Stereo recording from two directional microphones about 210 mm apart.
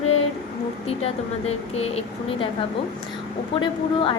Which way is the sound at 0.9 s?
30° left (ahead or behind).